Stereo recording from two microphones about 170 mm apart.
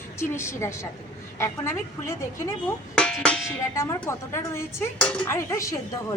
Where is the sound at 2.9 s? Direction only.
5° left (ahead or behind).